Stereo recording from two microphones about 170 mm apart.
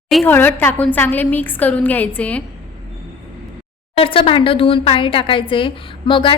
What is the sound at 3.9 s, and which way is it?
Speech, 30° left (ahead or behind).